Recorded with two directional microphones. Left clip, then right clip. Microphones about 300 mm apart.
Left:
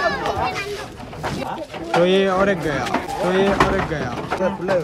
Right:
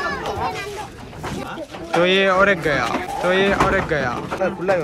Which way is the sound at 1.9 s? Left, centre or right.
Centre.